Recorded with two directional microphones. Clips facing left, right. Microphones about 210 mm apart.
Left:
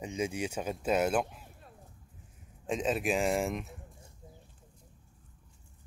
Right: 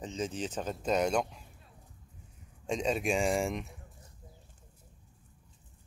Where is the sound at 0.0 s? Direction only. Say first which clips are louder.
Left 2 dB; 10° left (ahead or behind).